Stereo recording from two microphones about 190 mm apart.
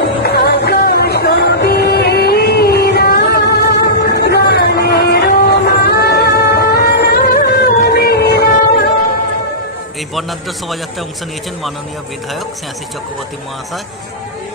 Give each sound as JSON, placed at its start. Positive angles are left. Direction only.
{"t": 0.2, "sound": "music", "side_deg": 55}